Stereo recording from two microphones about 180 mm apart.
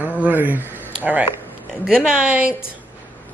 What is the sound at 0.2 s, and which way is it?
Speech, 10° right (ahead or behind).